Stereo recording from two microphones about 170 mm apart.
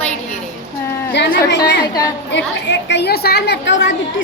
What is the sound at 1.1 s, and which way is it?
A woman's voice, 85° left.